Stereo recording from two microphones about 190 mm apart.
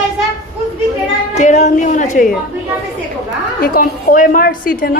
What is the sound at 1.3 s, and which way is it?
A woman's voice, 35° left (ahead or behind).